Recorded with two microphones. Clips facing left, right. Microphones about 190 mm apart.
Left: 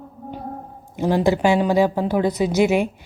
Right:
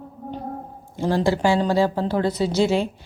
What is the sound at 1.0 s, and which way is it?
A woman's voice, 15° left (ahead or behind).